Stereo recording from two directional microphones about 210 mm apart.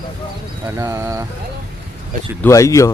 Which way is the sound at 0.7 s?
15° right (ahead or behind).